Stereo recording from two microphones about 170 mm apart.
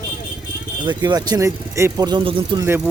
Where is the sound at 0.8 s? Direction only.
25° right (ahead or behind).